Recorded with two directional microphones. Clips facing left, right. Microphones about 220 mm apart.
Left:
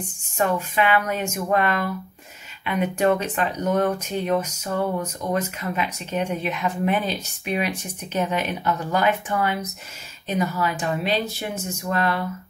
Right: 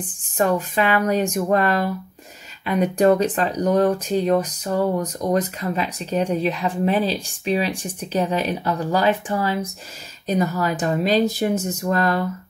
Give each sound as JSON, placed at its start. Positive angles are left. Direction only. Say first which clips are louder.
{"t": 0.4, "sound": "speech", "louder": "right 2 dB", "side_deg": -35}